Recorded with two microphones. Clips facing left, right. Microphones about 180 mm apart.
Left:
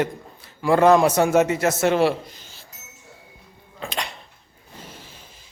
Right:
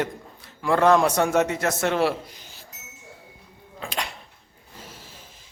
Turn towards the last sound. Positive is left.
turn(degrees=0)  # may be behind; listen again after turning